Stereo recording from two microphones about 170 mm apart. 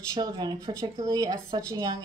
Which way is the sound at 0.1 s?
25° right (ahead or behind).